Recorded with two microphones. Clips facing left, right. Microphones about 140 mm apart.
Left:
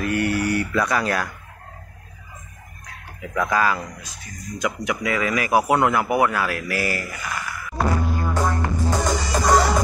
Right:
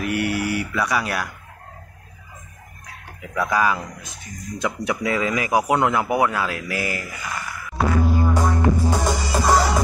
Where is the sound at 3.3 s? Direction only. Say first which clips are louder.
Even; 10° right (ahead or behind).